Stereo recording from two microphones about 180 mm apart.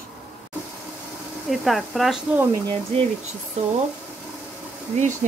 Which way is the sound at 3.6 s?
35° right (ahead or behind).